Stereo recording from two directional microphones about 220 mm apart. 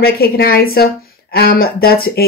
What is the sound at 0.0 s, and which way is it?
Speech, 45° left (ahead or behind).